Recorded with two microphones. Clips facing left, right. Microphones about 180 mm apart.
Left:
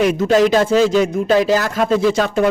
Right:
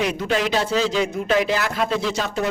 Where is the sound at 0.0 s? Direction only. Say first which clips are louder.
Left 9 dB; 45° left (ahead or behind).